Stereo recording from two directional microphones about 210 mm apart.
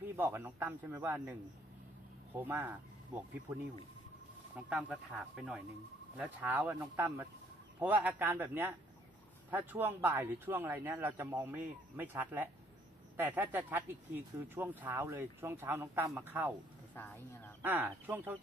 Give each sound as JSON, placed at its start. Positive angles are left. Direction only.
{"t": 0.0, "sound": "speech", "side_deg": -10}
{"t": 16.9, "sound": "speech", "side_deg": 10}
{"t": 17.6, "sound": "speech", "side_deg": -10}